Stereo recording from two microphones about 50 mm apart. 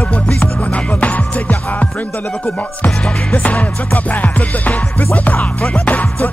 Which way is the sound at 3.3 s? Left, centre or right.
Left.